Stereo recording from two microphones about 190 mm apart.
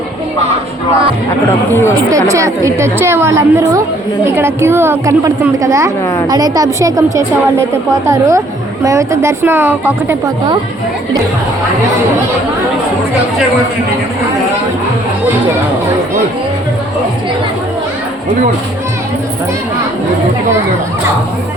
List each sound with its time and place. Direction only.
1.7 s speech: 10° left (ahead or behind)
2.0 s a woman's voice: 15° right (ahead or behind)